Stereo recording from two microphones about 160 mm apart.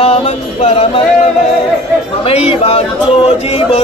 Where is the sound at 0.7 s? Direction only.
40° left (ahead or behind).